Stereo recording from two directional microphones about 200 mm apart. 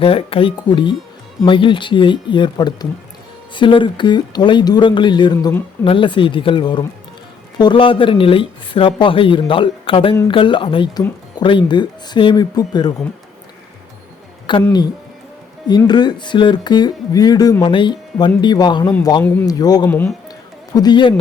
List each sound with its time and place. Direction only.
0.0 s speech: 30° left (ahead or behind)
14.6 s speech: 20° left (ahead or behind)
20.7 s speech: 20° left (ahead or behind)